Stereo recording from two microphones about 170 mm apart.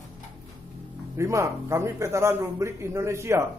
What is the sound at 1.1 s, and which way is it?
A man's voice, 15° right (ahead or behind).